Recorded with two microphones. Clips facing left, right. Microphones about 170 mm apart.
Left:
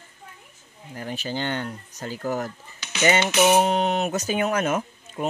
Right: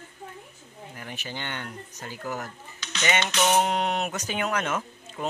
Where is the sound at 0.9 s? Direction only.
35° left (ahead or behind).